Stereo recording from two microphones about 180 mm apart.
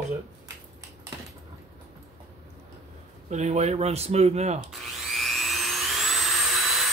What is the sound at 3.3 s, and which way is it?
Speech, 40° right (ahead or behind).